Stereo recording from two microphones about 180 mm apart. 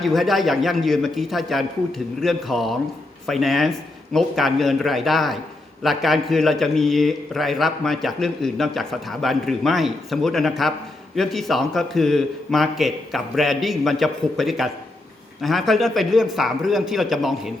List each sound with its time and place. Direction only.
0.0 s a man's voice: centre (ahead or behind)